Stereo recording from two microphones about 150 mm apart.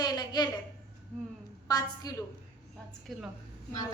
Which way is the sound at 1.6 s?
25° left (ahead or behind).